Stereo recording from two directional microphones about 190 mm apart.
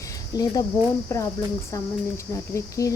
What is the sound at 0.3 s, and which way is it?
Speech, 20° left (ahead or behind).